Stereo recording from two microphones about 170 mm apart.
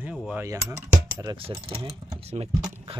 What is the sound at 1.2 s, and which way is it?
Speech, 30° right (ahead or behind).